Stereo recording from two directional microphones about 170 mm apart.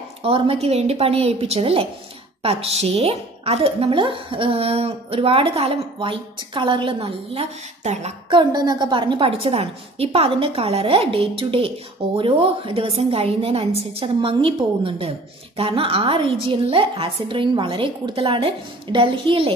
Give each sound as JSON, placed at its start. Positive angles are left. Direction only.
{"t": 0.2, "sound": "a woman's voice", "side_deg": -35}
{"t": 8.4, "sound": "a woman's voice", "side_deg": -25}